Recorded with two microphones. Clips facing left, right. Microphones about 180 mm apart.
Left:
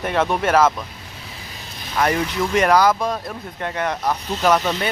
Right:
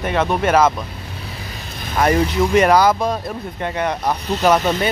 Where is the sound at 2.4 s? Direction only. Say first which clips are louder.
Right 2 dB; 20° right (ahead or behind).